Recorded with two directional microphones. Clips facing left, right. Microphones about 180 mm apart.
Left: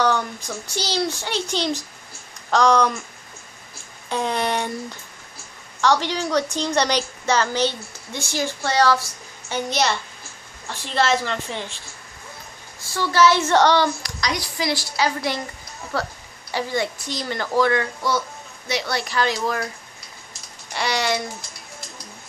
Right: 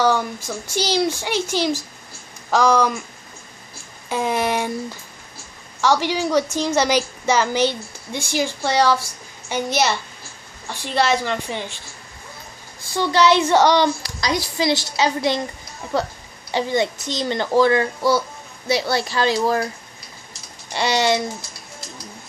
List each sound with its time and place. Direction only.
0.0 s a woman's voice: 10° right (ahead or behind)
4.1 s a sound: 10° right (ahead or behind)
5.8 s a woman's voice: 10° right (ahead or behind)
10.7 s a woman's voice: centre (ahead or behind)
12.9 s a woman's voice: 20° right (ahead or behind)
14.0 s a child's voice: 30° right (ahead or behind)
20.7 s a child's voice: 25° right (ahead or behind)